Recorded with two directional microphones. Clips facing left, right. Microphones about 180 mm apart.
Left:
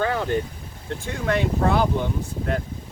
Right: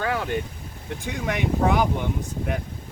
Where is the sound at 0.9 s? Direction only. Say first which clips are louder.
Left 3 dB; 15° right (ahead or behind).